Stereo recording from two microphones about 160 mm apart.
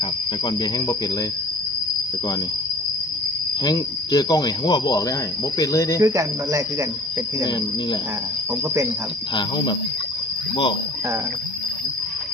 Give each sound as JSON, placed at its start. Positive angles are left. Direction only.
{"t": 0.0, "sound": "cricket", "side_deg": 25}
{"t": 3.6, "sound": "cricket", "side_deg": 25}
{"t": 6.0, "sound": "speech", "side_deg": -20}
{"t": 9.3, "sound": "cricket", "side_deg": 30}